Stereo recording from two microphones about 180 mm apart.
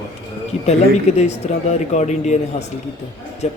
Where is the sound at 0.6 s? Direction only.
35° left (ahead or behind).